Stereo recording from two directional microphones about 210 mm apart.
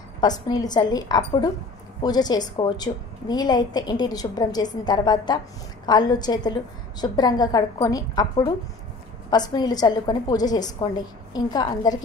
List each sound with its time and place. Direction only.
0.2 s a woman's voice: 20° left (ahead or behind)